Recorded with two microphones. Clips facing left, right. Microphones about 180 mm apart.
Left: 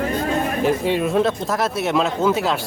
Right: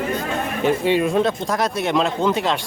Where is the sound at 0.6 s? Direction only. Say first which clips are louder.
Right 4 dB; centre (ahead or behind).